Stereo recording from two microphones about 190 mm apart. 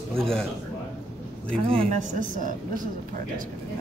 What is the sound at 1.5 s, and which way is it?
Speech, 5° left (ahead or behind).